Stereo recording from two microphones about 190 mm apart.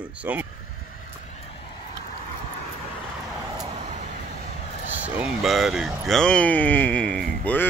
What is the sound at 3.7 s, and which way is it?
Vehicle, 40° right (ahead or behind).